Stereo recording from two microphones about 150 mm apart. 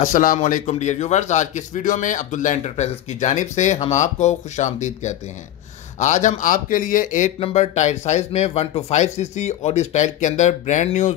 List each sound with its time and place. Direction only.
0.0 s speech: 60° left (ahead or behind)